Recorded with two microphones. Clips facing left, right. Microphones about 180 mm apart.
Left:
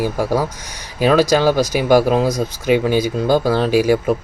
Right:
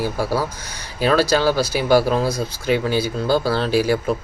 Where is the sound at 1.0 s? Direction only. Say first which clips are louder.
Left 3 dB; 15° left (ahead or behind).